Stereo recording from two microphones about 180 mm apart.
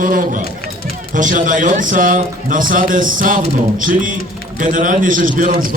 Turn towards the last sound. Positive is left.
turn(degrees=-50)  # may be behind; listen again after turning